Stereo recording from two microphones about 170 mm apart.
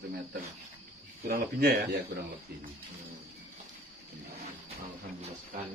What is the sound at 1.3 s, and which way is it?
Speech, 65° right (ahead or behind).